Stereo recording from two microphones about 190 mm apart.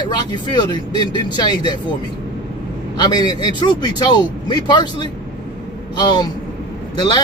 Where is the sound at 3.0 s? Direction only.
20° left (ahead or behind).